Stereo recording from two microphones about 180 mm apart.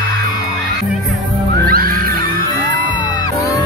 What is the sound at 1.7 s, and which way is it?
Music, 55° right (ahead or behind).